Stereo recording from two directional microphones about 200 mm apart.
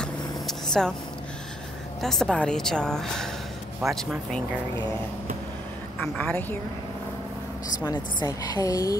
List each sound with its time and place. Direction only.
0.0 s vehicle: 5° left (ahead or behind)
2.0 s a woman's voice: centre (ahead or behind)
6.1 s a woman's voice: 5° left (ahead or behind)
7.8 s a woman's voice: 20° left (ahead or behind)